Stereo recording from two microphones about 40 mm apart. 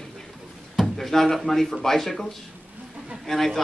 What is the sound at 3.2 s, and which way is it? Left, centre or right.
Speech, centre.